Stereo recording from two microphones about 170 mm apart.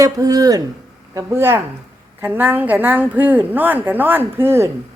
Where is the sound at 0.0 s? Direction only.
20° right (ahead or behind).